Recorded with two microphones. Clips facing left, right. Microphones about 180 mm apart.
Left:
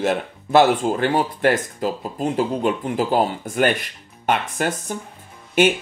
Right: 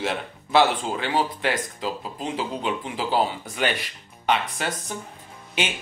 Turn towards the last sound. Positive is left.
turn(degrees=50)  # may be behind; listen again after turning